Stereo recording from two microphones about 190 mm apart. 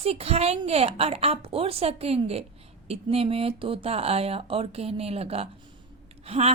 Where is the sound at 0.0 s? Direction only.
30° right (ahead or behind).